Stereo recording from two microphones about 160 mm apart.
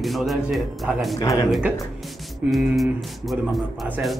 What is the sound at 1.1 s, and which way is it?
Speech, 20° left (ahead or behind).